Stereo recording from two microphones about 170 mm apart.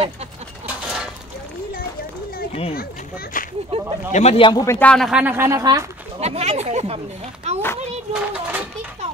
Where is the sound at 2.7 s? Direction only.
60° left (ahead or behind).